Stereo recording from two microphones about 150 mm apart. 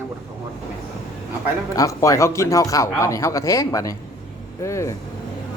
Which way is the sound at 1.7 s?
20° left (ahead or behind).